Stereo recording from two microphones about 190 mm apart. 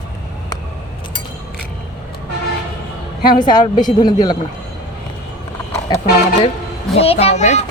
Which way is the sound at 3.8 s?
20° left (ahead or behind).